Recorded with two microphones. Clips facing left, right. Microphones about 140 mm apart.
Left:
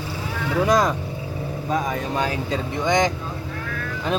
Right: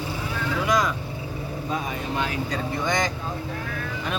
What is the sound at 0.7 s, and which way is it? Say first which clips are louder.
Speech: left 4 dB; 35° left (ahead or behind).